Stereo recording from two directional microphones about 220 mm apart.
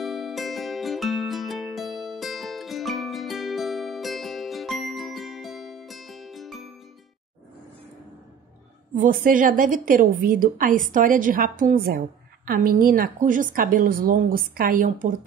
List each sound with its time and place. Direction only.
0.0 s music: centre (ahead or behind)
8.9 s a woman's voice: 35° right (ahead or behind)